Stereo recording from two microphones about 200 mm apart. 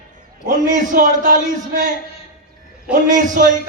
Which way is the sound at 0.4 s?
40° right (ahead or behind).